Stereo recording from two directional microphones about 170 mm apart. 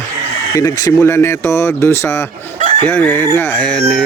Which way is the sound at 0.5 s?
20° left (ahead or behind).